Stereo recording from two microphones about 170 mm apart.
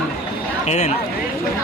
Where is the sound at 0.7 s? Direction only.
40° left (ahead or behind).